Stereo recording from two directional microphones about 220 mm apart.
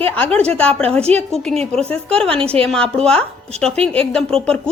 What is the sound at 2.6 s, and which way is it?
A woman's voice, 5° left (ahead or behind).